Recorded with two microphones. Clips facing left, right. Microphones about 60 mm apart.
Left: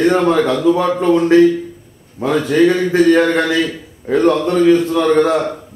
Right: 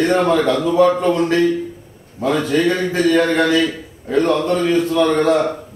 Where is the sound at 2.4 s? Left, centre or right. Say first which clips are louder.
Left 4 dB; centre.